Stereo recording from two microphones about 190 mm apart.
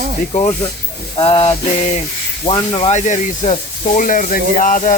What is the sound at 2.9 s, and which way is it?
Speech, 40° left (ahead or behind).